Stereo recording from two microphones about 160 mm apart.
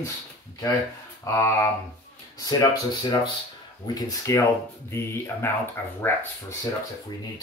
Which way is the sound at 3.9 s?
25° left (ahead or behind).